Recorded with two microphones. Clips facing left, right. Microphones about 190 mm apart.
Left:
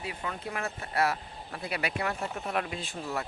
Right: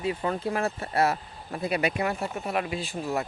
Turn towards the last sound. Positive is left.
turn(degrees=-10)  # may be behind; listen again after turning